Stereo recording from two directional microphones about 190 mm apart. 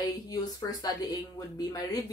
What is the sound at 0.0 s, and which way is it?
Speech, 20° left (ahead or behind).